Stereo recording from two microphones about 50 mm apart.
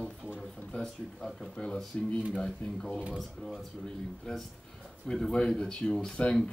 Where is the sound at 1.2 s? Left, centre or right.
Centre.